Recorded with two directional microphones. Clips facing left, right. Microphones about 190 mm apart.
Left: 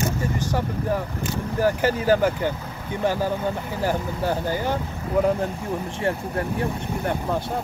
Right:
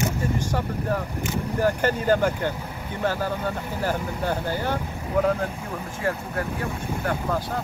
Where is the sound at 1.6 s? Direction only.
10° left (ahead or behind).